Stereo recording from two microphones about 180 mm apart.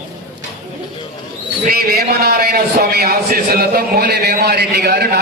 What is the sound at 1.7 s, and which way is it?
A man's voice, 60° right (ahead or behind).